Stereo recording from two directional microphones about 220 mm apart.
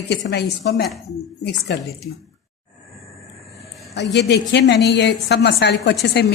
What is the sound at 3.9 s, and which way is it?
A woman's voice, 50° left (ahead or behind).